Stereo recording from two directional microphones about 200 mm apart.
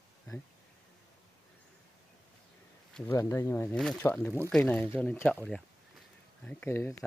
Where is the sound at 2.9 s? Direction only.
10° left (ahead or behind).